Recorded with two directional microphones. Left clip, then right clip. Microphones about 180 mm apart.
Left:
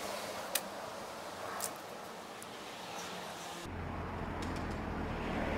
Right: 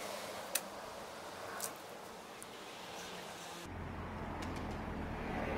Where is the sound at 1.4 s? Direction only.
5° right (ahead or behind).